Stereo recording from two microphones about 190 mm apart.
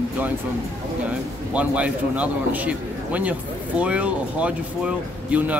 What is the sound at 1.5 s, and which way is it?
A man's voice, 5° right (ahead or behind).